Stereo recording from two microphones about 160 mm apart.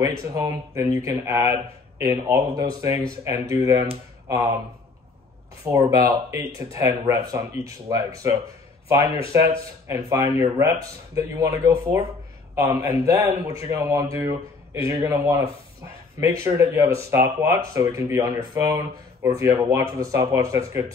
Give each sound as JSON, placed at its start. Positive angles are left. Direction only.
{"t": 0.0, "sound": "speech", "side_deg": -20}
{"t": 5.6, "sound": "speech", "side_deg": -20}
{"t": 16.4, "sound": "speech", "side_deg": -15}
{"t": 19.2, "sound": "speech", "side_deg": -20}